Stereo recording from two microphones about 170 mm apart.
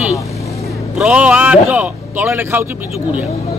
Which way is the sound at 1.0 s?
5° right (ahead or behind).